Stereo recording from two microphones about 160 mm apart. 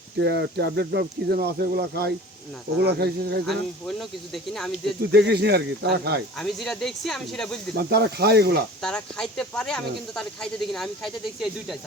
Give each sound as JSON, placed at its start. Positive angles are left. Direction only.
{"t": 0.2, "sound": "speech", "side_deg": -90}
{"t": 3.4, "sound": "speech", "side_deg": 0}
{"t": 5.1, "sound": "speech", "side_deg": -90}
{"t": 6.4, "sound": "speech", "side_deg": 0}
{"t": 7.8, "sound": "speech", "side_deg": -85}
{"t": 8.8, "sound": "speech", "side_deg": 5}